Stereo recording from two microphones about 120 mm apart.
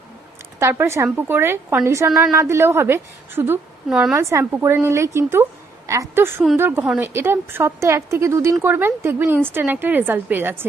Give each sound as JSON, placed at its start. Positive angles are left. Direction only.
{"t": 0.6, "sound": "a woman's voice", "side_deg": -20}
{"t": 3.8, "sound": "a woman's voice", "side_deg": -5}
{"t": 4.1, "sound": "a woman's voice", "side_deg": -25}